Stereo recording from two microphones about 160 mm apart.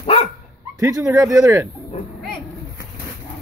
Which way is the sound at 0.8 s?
20° right (ahead or behind).